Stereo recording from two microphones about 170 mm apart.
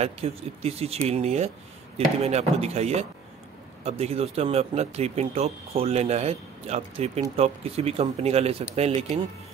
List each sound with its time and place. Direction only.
0.0 s speech: 35° right (ahead or behind)